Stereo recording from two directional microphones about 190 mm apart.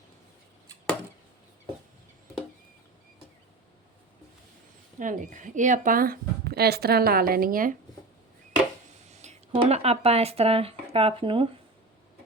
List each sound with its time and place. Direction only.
4.9 s a woman's voice: 45° right (ahead or behind)
9.2 s speech: 35° right (ahead or behind)